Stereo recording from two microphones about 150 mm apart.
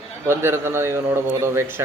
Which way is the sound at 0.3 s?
15° right (ahead or behind).